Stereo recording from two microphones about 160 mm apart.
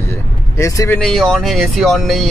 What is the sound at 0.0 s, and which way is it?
Vehicle, 15° left (ahead or behind).